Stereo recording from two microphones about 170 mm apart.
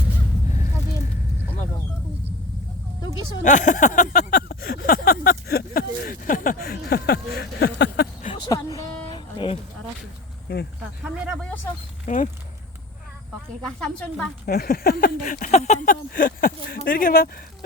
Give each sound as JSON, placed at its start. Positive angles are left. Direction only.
{"t": 3.4, "sound": "a sound", "side_deg": 50}
{"t": 8.3, "sound": "a sound", "side_deg": 20}
{"t": 10.5, "sound": "speech", "side_deg": 70}
{"t": 12.0, "sound": "speech", "side_deg": 50}
{"t": 13.7, "sound": "speech", "side_deg": 5}
{"t": 14.4, "sound": "speech", "side_deg": 60}